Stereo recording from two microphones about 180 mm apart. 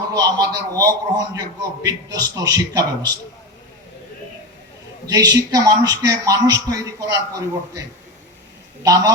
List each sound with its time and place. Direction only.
0.1 s a man's voice: 20° right (ahead or behind)
5.0 s a man's voice: 20° right (ahead or behind)